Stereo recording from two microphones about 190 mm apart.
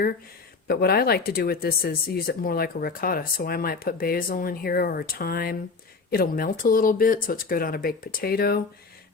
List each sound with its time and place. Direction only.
0.7 s speech: 55° left (ahead or behind)